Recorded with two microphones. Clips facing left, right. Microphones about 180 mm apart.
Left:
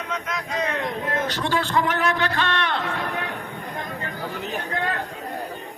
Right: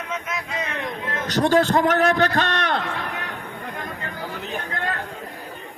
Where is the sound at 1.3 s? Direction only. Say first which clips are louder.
Right 12 dB; 45° right (ahead or behind).